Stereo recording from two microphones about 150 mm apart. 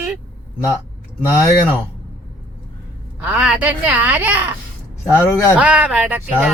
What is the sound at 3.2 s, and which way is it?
Speech, 5° right (ahead or behind).